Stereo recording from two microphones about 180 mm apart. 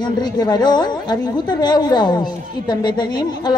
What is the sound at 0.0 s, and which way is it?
A woman's voice, 25° left (ahead or behind).